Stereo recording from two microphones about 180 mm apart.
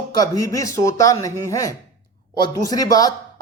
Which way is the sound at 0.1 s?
20° left (ahead or behind).